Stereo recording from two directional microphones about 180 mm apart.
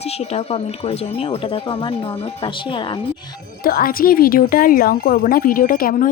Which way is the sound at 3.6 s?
55° left (ahead or behind).